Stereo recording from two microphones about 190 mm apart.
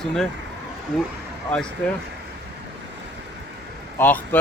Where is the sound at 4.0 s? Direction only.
10° left (ahead or behind).